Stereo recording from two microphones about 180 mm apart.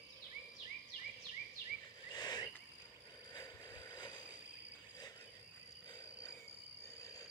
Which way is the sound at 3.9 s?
25° left (ahead or behind).